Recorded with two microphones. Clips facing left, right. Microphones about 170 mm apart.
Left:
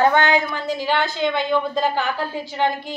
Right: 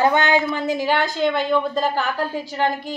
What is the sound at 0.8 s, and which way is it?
A woman's voice, 10° right (ahead or behind).